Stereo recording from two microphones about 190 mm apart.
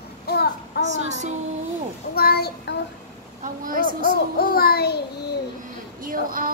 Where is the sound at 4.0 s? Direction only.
50° left (ahead or behind).